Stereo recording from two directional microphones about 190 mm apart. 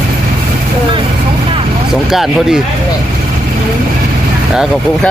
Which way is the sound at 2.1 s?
Centre (ahead or behind).